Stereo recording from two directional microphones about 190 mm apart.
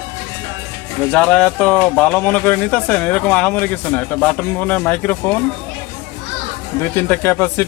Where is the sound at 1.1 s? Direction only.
5° left (ahead or behind).